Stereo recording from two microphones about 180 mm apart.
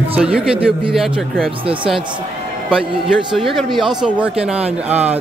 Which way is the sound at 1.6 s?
30° right (ahead or behind).